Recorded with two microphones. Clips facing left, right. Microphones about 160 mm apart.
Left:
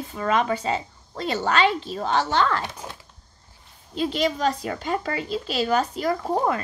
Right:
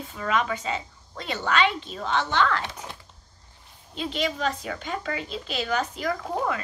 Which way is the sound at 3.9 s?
40° left (ahead or behind).